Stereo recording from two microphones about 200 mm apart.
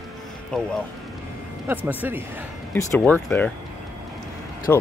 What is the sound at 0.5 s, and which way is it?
Speech, centre (ahead or behind).